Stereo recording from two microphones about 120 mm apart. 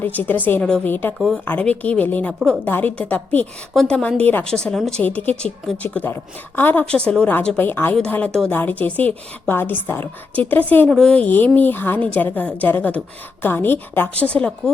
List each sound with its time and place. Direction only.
0.0 s a woman's voice: 15° left (ahead or behind)
10.8 s a woman's voice: 5° left (ahead or behind)